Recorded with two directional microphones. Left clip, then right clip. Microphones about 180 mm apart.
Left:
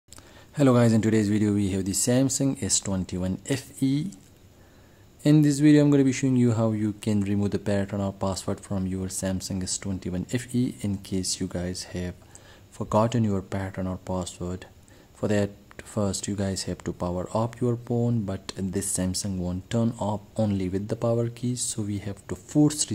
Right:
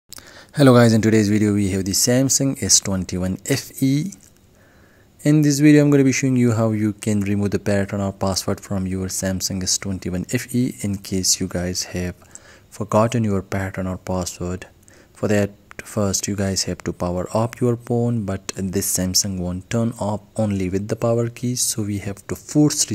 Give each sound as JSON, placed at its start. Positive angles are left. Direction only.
{"t": 0.1, "sound": "speech", "side_deg": -30}
{"t": 5.2, "sound": "speech", "side_deg": -20}